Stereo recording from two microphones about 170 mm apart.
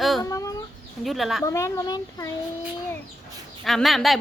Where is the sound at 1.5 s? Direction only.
15° left (ahead or behind).